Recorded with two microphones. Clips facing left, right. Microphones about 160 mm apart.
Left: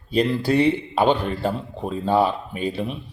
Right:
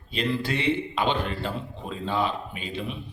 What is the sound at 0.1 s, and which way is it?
Speech, 40° left (ahead or behind).